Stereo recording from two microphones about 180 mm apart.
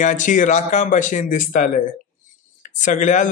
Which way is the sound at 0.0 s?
45° left (ahead or behind).